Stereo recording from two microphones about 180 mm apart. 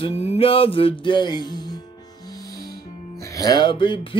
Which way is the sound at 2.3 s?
20° left (ahead or behind).